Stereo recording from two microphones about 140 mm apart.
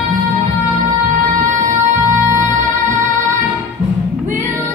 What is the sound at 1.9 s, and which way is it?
Music, 20° right (ahead or behind).